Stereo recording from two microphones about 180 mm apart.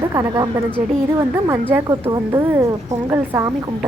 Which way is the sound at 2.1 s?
15° right (ahead or behind).